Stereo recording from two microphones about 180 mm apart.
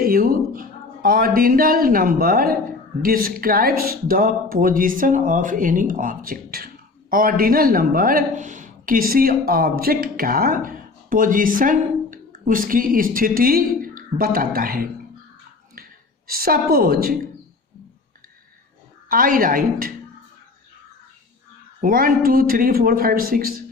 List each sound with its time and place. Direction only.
0.0 s speech: 55° right (ahead or behind)
15.7 s a sound: 55° right (ahead or behind)
19.0 s speech: 50° right (ahead or behind)
21.8 s speech: 50° right (ahead or behind)